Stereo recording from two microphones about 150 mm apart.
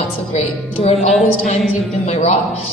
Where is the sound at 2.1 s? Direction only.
50° left (ahead or behind).